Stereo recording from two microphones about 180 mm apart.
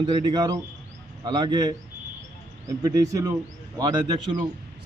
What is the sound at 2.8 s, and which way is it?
A man's voice, 20° right (ahead or behind).